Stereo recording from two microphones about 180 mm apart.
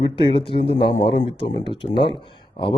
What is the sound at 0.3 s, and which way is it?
Speech, 30° left (ahead or behind).